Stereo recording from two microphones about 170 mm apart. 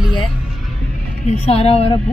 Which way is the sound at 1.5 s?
35° left (ahead or behind).